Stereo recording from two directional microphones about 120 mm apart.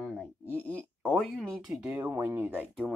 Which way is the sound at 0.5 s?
15° left (ahead or behind).